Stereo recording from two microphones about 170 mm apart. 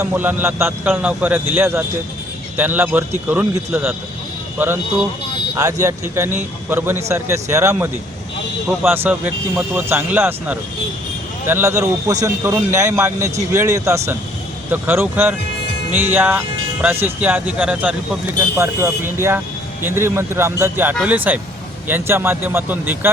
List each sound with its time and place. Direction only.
0.0 s speech: 10° right (ahead or behind)
5.5 s speech: 20° right (ahead or behind)